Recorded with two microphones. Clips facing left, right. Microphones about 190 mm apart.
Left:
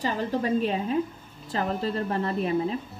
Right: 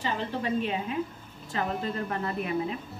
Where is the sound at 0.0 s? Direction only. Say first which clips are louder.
Left 4 dB; 40° left (ahead or behind).